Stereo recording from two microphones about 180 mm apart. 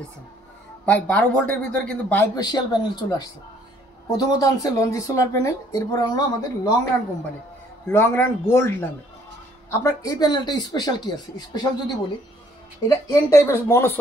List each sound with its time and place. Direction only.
0.8 s speech: 5° left (ahead or behind)
2.3 s a woman's voice: 25° left (ahead or behind)
7.9 s a woman's voice: 10° left (ahead or behind)